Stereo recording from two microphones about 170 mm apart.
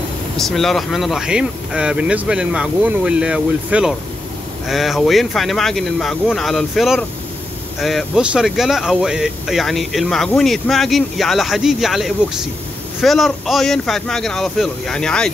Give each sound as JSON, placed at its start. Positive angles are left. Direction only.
{"t": 0.4, "sound": "speech", "side_deg": 0}